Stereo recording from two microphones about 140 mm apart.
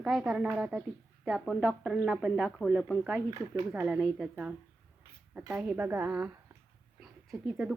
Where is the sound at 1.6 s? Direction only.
10° right (ahead or behind).